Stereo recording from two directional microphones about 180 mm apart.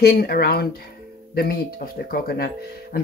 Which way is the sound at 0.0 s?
60° left (ahead or behind).